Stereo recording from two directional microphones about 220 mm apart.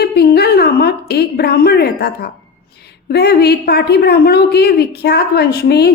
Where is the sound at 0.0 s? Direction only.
45° left (ahead or behind).